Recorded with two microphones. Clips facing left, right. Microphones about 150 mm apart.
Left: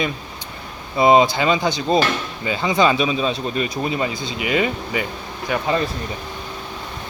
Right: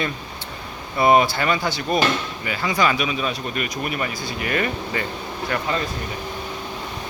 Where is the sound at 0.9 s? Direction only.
20° left (ahead or behind).